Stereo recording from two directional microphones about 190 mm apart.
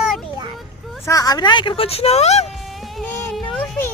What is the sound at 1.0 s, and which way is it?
Speech, 20° left (ahead or behind).